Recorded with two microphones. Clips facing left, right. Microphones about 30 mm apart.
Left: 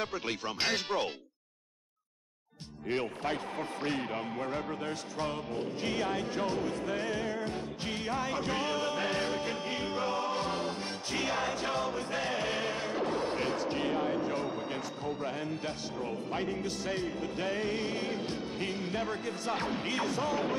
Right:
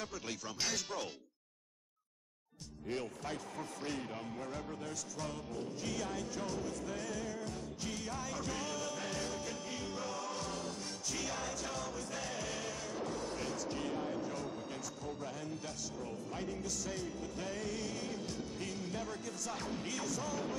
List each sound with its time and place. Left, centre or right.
0.0 s speech: left
2.9 s speech: left